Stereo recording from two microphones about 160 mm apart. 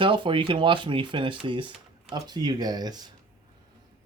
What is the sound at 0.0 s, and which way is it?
Speech, 30° right (ahead or behind).